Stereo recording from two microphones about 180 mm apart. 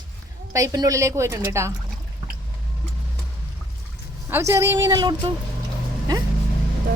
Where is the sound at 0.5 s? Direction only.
20° right (ahead or behind).